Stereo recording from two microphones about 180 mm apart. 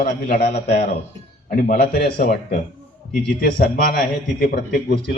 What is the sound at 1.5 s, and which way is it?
Speech, 50° left (ahead or behind).